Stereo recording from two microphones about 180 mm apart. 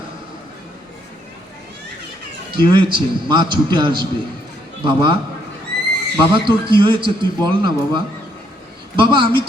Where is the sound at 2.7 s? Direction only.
25° right (ahead or behind).